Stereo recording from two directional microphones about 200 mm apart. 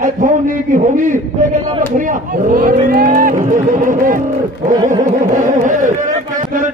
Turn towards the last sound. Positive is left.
turn(degrees=-40)  # may be behind; listen again after turning